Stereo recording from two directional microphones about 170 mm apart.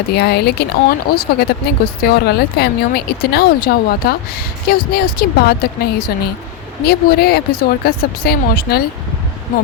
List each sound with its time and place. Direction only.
0.1 s speech: 75° left (ahead or behind)